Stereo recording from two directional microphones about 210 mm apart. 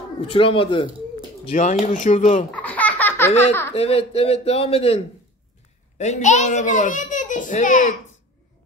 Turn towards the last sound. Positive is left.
turn(degrees=40)  # may be behind; listen again after turning